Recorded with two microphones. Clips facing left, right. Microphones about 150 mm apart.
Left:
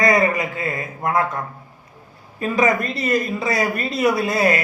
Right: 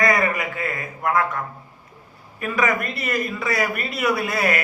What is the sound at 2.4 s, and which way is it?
A man's voice, 25° left (ahead or behind).